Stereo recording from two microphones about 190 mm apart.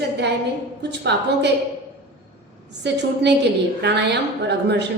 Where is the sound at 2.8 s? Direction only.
65° right (ahead or behind).